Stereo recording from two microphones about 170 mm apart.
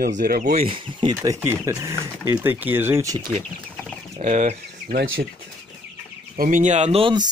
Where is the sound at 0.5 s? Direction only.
30° right (ahead or behind).